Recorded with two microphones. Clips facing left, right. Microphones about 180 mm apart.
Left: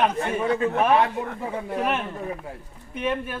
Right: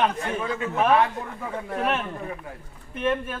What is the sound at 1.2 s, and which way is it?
Speech, 10° left (ahead or behind).